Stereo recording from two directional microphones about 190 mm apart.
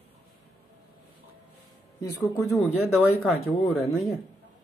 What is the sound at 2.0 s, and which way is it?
Speech, 15° left (ahead or behind).